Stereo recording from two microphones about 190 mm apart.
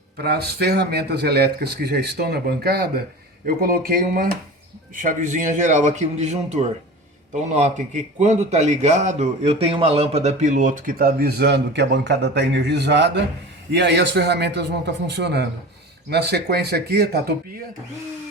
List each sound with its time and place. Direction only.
0.2 s a man's voice: 55° right (ahead or behind)